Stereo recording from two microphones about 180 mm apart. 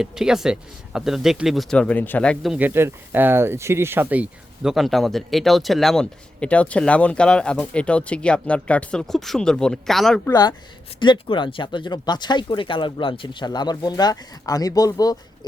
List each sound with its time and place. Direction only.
0.0 s speech: centre (ahead or behind)
10.2 s speech: 20° left (ahead or behind)